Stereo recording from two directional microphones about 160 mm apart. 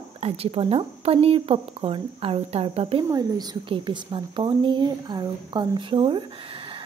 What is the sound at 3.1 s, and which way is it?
A woman's voice, 25° right (ahead or behind).